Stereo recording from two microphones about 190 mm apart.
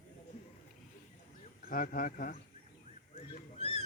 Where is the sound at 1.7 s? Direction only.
50° left (ahead or behind).